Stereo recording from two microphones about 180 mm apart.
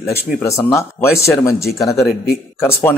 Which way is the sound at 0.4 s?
15° left (ahead or behind).